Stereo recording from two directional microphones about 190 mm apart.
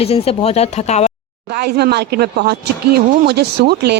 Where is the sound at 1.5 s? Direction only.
60° right (ahead or behind).